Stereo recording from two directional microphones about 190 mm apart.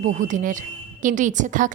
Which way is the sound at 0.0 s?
40° right (ahead or behind).